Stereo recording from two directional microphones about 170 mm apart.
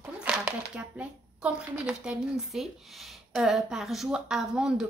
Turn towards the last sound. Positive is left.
turn(degrees=-5)  # may be behind; listen again after turning